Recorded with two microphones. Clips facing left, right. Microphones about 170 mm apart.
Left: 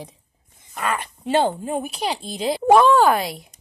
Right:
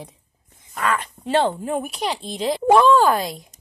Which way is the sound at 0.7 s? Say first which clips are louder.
Right 2 dB; 10° left (ahead or behind).